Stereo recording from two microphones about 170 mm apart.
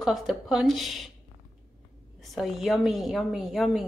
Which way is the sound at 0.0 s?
Centre (ahead or behind).